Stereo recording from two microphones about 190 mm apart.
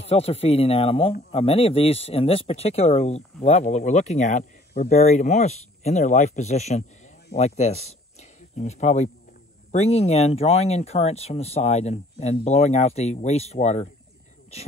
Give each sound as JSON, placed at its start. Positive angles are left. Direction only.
{"t": 0.0, "sound": "speech", "side_deg": 30}